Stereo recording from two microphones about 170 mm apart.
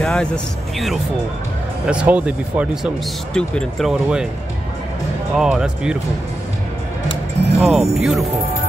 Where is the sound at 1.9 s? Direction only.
10° right (ahead or behind).